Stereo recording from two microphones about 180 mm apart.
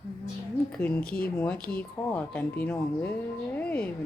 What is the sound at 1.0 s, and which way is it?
Speech, 55° left (ahead or behind).